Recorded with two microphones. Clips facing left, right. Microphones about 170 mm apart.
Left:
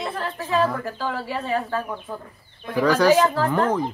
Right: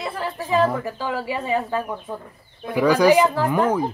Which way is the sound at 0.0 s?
10° right (ahead or behind).